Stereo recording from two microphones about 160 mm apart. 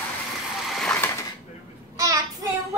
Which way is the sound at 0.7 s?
5° left (ahead or behind).